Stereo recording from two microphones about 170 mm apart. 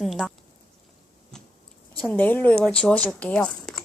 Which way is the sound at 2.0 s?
10° left (ahead or behind).